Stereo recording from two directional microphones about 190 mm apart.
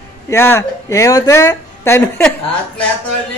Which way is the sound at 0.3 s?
15° left (ahead or behind).